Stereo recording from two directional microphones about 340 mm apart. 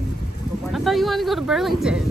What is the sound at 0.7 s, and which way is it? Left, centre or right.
Speech, centre.